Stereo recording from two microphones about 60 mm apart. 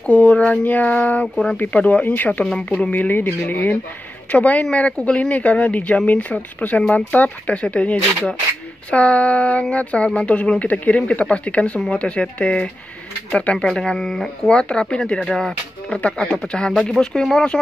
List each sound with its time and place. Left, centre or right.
0.0 s speech: left
1.3 s speech: centre
1.6 s speech: left; by 17.5 s centre